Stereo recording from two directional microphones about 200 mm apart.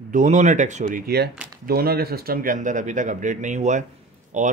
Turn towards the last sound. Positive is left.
turn(degrees=-35)  # may be behind; listen again after turning